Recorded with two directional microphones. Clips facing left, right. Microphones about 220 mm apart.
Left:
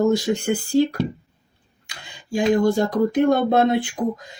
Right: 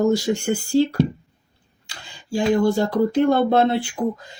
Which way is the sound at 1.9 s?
20° left (ahead or behind).